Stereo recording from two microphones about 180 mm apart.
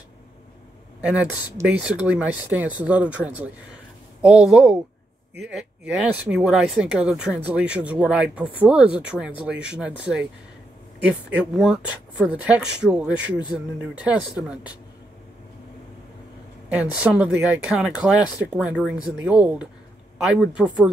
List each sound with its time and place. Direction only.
1.0 s speech: 10° right (ahead or behind)
11.5 s speech: 5° right (ahead or behind)
17.0 s speech: 5° right (ahead or behind)